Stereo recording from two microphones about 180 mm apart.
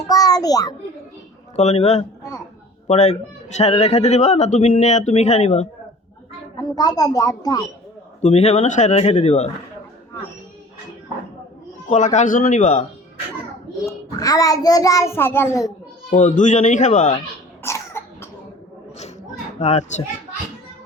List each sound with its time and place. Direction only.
0.1 s a sound: 20° left (ahead or behind)
1.5 s a man's voice: 35° left (ahead or behind)
6.6 s a child's voice: 20° left (ahead or behind)
8.2 s a man's voice: 40° left (ahead or behind)
11.9 s speech: 45° left (ahead or behind)
14.2 s a child's voice: 20° left (ahead or behind)
16.0 s speech: 45° left (ahead or behind)
17.6 s cough: 15° left (ahead or behind)
19.5 s a man's voice: 35° left (ahead or behind)